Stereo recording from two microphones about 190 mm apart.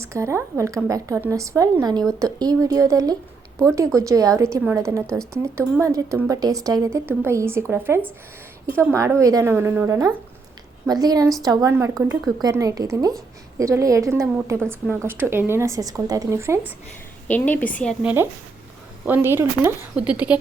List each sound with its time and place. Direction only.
0.0 s a woman's voice: 15° right (ahead or behind)
17.2 s a woman's voice: 10° left (ahead or behind)
18.0 s a woman's voice: 10° right (ahead or behind)